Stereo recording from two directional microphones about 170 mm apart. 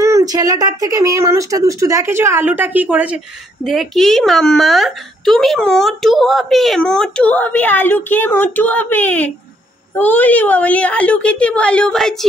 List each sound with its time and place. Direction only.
0.0 s a woman's voice: 20° right (ahead or behind); by 12.3 s centre (ahead or behind)